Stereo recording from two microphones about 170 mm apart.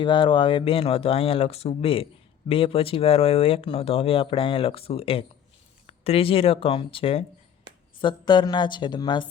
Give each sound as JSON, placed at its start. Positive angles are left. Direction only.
{"t": 0.0, "sound": "speech", "side_deg": 30}